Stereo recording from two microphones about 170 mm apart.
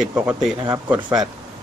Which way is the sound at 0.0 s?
5° right (ahead or behind).